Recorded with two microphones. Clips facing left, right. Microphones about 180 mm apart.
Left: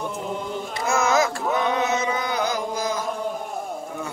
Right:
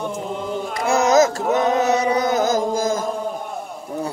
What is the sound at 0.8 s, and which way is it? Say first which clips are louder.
Chant: right 6 dB; 40° right (ahead or behind).